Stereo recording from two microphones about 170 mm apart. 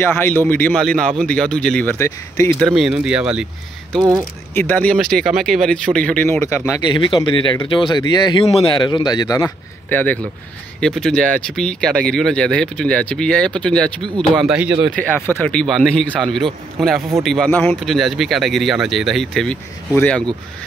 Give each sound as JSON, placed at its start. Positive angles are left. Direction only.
{"t": 0.0, "sound": "speech", "side_deg": 10}
{"t": 2.7, "sound": "speech", "side_deg": -5}
{"t": 4.6, "sound": "speech", "side_deg": 10}
{"t": 5.0, "sound": "speech", "side_deg": 0}
{"t": 7.0, "sound": "speech", "side_deg": 30}
{"t": 15.0, "sound": "speech", "side_deg": 10}